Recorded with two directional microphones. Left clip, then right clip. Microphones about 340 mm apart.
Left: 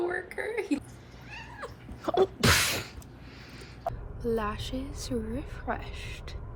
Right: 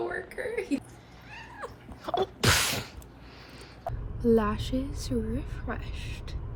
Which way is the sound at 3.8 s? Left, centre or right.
Centre.